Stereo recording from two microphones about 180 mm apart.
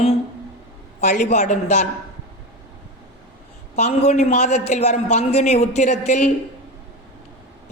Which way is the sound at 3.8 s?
40° left (ahead or behind).